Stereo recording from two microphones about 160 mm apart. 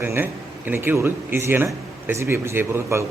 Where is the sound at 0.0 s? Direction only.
15° right (ahead or behind).